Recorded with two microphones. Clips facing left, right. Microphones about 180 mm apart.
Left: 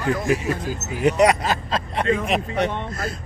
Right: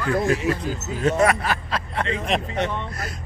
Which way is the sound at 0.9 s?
15° left (ahead or behind).